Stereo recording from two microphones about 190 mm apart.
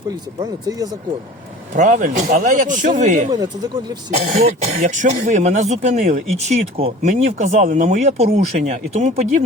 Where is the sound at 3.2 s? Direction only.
20° right (ahead or behind).